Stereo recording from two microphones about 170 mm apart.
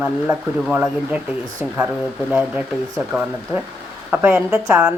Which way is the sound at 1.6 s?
10° right (ahead or behind).